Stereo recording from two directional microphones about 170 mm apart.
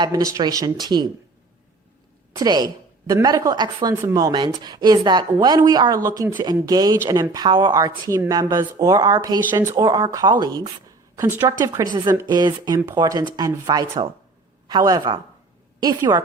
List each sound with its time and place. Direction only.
0.0 s speech: 20° right (ahead or behind)
2.3 s speech: 25° right (ahead or behind)
11.2 s speech: 15° right (ahead or behind)